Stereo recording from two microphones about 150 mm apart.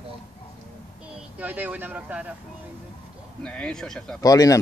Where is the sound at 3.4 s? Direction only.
10° left (ahead or behind).